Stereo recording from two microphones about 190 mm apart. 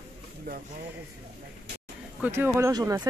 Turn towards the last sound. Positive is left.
turn(degrees=-20)  # may be behind; listen again after turning